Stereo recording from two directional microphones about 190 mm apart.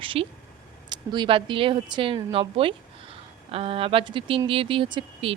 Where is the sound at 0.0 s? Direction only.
25° right (ahead or behind).